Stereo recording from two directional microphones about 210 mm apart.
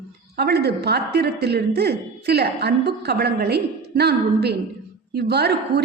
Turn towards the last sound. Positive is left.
turn(degrees=-50)  # may be behind; listen again after turning